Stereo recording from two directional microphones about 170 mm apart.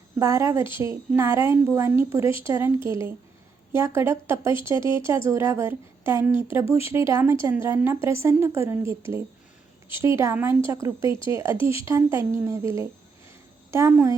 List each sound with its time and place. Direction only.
0.2 s a woman's voice: 15° right (ahead or behind)